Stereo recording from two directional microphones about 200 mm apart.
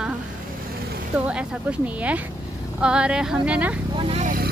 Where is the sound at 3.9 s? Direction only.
30° right (ahead or behind).